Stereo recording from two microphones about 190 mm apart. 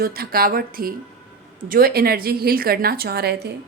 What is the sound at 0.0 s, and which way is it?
A woman's voice, 50° right (ahead or behind).